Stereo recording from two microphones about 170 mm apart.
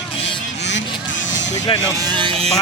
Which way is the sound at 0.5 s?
90° left.